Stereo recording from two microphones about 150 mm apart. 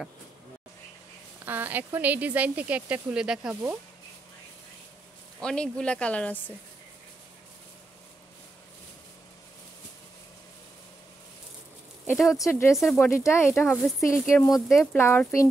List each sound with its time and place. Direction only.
1.4 s speech: 10° right (ahead or behind)
5.4 s speech: 5° left (ahead or behind)
12.1 s speech: centre (ahead or behind)
12.4 s speech: 20° left (ahead or behind)
12.7 s speech: centre (ahead or behind)
13.0 s speech: 15° left (ahead or behind)
14.7 s speech: centre (ahead or behind)
15.0 s speech: 15° left (ahead or behind)